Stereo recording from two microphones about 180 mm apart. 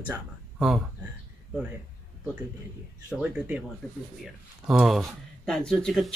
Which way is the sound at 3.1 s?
5° right (ahead or behind).